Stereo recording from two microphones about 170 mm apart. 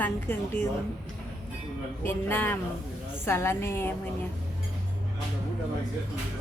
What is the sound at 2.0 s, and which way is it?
A woman's voice, 10° left (ahead or behind).